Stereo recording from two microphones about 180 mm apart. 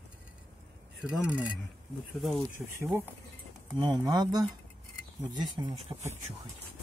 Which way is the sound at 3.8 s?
25° right (ahead or behind).